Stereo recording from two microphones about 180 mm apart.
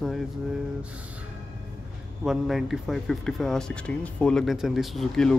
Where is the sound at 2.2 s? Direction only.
Centre (ahead or behind).